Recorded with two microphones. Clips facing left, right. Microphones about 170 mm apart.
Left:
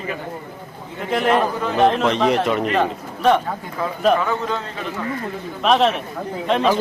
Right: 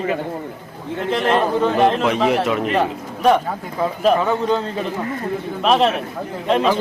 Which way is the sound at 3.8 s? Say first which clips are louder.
Right 1 dB; 20° right (ahead or behind).